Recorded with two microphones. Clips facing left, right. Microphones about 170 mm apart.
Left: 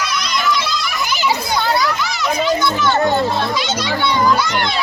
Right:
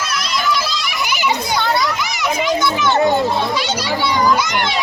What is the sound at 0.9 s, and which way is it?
Children playing, 10° right (ahead or behind).